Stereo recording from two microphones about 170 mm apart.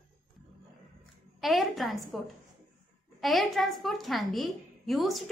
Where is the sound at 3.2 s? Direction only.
Centre (ahead or behind).